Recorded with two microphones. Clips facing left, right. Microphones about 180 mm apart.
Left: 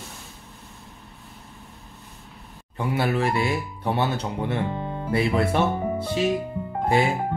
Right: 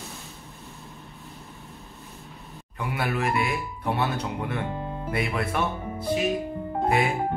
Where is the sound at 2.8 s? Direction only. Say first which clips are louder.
Left 4 dB; 30° left (ahead or behind).